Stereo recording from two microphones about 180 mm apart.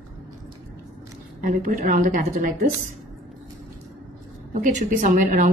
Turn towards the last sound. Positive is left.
turn(degrees=-45)  # may be behind; listen again after turning